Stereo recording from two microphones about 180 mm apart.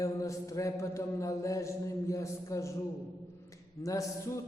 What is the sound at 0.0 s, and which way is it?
Mantra, 15° left (ahead or behind).